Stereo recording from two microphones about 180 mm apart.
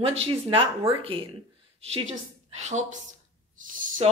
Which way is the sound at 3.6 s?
45° right (ahead or behind).